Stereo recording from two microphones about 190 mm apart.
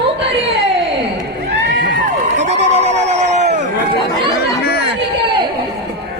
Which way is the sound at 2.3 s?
35° right (ahead or behind).